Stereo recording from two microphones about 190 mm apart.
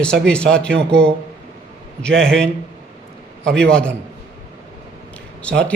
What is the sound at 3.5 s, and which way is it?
Speech, 5° left (ahead or behind).